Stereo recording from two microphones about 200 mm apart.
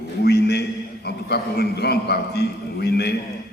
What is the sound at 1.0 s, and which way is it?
A man's voice, 55° left (ahead or behind).